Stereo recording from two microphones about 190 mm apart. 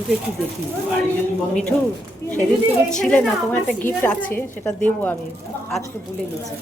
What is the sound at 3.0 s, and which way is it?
A woman's voice, 5° left (ahead or behind).